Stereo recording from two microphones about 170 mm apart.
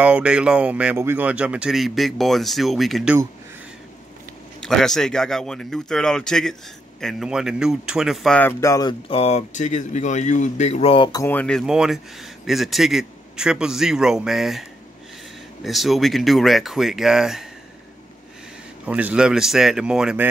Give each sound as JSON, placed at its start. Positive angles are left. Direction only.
{"t": 0.0, "sound": "speech", "side_deg": -5}
{"t": 4.6, "sound": "speech", "side_deg": 5}
{"t": 9.1, "sound": "speech", "side_deg": 40}
{"t": 11.1, "sound": "speech", "side_deg": 20}
{"t": 11.3, "sound": "speech", "side_deg": 5}
{"t": 18.9, "sound": "speech", "side_deg": -10}